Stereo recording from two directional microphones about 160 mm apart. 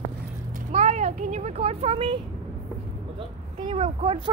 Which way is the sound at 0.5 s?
50° right (ahead or behind).